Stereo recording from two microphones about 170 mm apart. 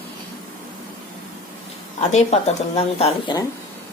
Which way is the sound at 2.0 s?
40° left (ahead or behind).